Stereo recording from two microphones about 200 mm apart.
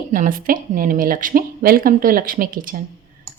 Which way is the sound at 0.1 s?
40° right (ahead or behind).